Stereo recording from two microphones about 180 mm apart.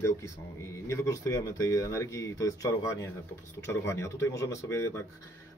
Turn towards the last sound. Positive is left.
turn(degrees=15)  # may be behind; listen again after turning